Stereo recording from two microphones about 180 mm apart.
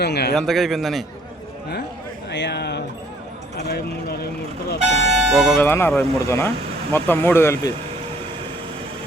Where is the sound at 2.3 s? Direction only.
70° left (ahead or behind).